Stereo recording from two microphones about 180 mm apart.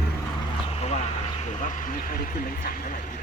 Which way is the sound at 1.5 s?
45° left (ahead or behind).